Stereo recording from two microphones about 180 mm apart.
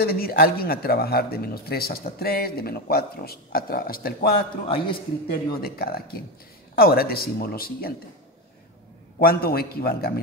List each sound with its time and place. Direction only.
0.0 s a man's voice: 55° left (ahead or behind)
4.6 s a man's voice: 30° left (ahead or behind)
5.3 s a man's voice: 55° left (ahead or behind)
9.2 s a man's voice: 55° left (ahead or behind)